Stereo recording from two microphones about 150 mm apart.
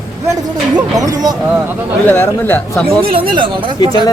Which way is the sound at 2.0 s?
15° left (ahead or behind).